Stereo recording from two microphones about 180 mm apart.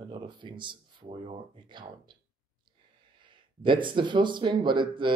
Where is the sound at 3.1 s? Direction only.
25° right (ahead or behind).